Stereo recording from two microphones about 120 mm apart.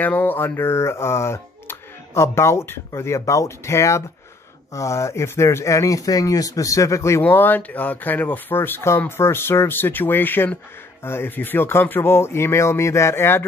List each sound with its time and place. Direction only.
0.0 s speech: 15° left (ahead or behind)